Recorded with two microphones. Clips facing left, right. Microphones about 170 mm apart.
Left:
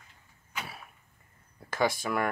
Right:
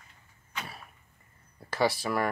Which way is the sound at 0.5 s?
5° left (ahead or behind).